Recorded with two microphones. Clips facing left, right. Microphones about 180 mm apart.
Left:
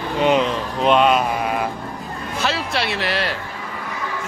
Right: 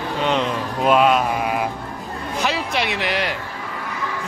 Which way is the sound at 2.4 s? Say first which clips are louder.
Even; 15° right (ahead or behind).